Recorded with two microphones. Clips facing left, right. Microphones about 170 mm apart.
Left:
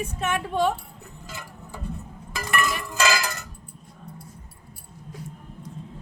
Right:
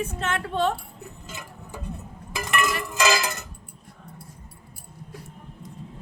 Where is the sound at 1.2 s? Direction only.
20° right (ahead or behind).